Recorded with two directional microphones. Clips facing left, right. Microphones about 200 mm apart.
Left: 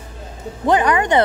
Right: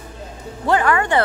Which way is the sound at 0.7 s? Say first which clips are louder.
Left 2 dB; 20° left (ahead or behind).